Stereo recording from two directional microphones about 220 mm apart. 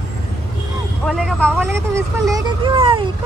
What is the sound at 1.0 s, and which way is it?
Vehicle, centre (ahead or behind).